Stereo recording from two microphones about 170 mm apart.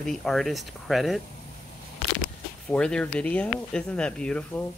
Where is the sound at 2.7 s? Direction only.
5° left (ahead or behind).